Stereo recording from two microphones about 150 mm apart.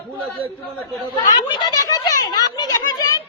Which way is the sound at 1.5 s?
25° left (ahead or behind).